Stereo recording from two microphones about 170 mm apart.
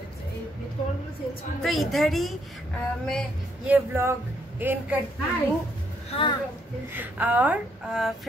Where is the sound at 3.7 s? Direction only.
15° right (ahead or behind).